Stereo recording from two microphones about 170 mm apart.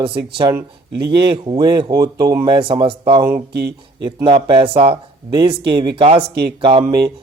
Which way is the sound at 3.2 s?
65° right (ahead or behind).